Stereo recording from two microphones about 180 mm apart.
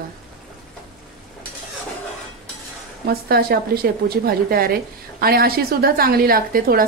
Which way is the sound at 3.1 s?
60° right (ahead or behind).